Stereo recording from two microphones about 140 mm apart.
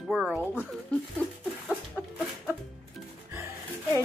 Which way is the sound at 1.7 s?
10° right (ahead or behind).